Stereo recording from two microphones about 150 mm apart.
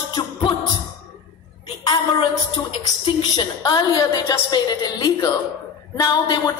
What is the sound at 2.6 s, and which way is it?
A woman's voice, 30° left (ahead or behind).